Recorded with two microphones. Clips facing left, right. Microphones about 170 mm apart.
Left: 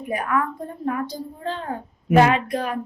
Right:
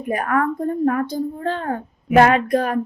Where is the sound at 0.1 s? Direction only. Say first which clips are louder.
Right 4 dB; 50° right (ahead or behind).